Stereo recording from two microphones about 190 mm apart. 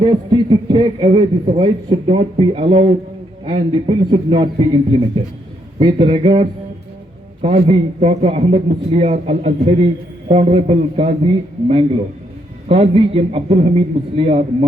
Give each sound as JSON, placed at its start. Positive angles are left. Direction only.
{"t": 0.0, "sound": "a man's voice", "side_deg": -25}
{"t": 12.6, "sound": "a man's voice", "side_deg": -30}